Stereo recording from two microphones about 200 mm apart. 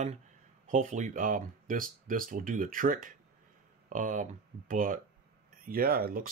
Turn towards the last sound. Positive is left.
turn(degrees=-45)  # may be behind; listen again after turning